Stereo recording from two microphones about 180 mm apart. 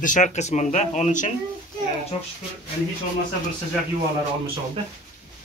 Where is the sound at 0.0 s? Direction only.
45° left (ahead or behind).